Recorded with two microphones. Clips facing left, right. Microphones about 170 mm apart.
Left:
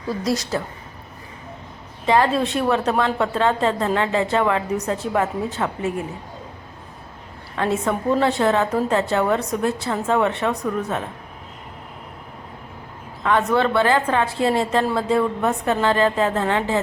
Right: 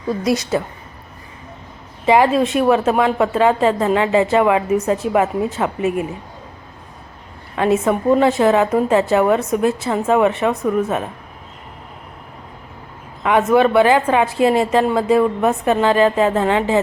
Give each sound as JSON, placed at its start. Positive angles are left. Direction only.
{"t": 0.5, "sound": "a woman's voice", "side_deg": -15}
{"t": 2.0, "sound": "a woman's voice", "side_deg": -15}
{"t": 7.5, "sound": "a woman's voice", "side_deg": -15}
{"t": 13.2, "sound": "a woman's voice", "side_deg": -15}